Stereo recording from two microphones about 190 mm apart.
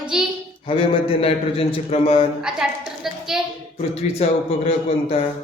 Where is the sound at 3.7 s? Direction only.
35° left (ahead or behind).